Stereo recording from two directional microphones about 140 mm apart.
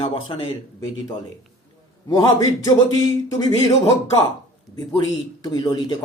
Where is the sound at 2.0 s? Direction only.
25° left (ahead or behind).